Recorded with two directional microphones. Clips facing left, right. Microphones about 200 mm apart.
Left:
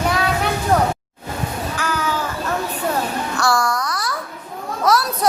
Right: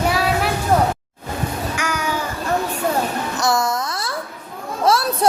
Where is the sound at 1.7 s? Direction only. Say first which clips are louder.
Even; 15° right (ahead or behind).